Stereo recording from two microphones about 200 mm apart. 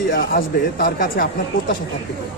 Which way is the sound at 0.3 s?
50° left (ahead or behind).